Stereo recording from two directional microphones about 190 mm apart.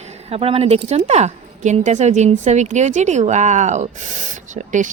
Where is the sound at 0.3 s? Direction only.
30° right (ahead or behind).